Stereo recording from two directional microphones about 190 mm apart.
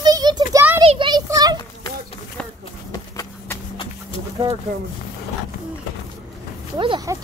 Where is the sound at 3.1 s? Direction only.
15° left (ahead or behind).